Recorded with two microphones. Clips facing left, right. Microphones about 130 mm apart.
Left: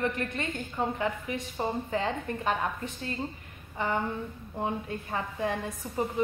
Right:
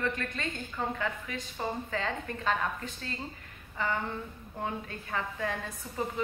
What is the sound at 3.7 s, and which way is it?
A woman's voice, 20° left (ahead or behind).